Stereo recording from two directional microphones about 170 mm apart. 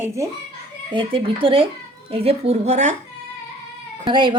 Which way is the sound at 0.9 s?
30° right (ahead or behind).